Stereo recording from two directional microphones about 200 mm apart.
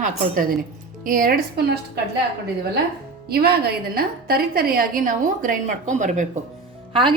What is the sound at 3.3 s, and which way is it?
A woman's voice, 50° right (ahead or behind).